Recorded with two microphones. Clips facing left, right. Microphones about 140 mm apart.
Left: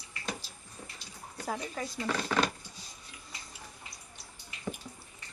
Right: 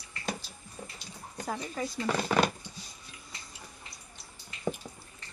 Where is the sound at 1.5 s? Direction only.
Centre (ahead or behind).